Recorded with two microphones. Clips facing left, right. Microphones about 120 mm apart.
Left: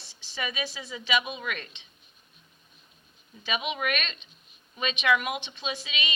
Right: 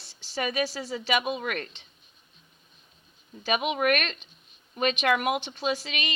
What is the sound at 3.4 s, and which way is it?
A woman's voice, 45° right (ahead or behind).